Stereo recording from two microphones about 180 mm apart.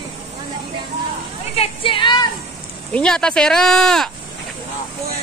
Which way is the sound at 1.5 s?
30° left (ahead or behind).